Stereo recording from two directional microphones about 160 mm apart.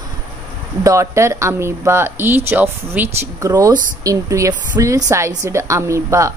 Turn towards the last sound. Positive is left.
turn(degrees=-20)  # may be behind; listen again after turning